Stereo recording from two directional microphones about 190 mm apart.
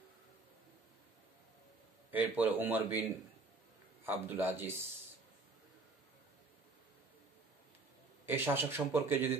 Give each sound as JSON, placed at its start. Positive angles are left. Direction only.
{"t": 2.0, "sound": "a man's voice", "side_deg": -10}
{"t": 8.3, "sound": "a man's voice", "side_deg": -10}